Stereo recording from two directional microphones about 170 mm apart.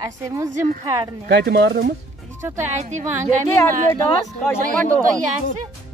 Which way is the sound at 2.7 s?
45° right (ahead or behind).